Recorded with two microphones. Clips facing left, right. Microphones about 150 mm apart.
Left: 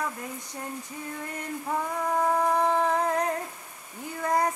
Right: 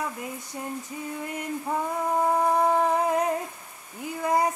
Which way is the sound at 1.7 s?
15° right (ahead or behind).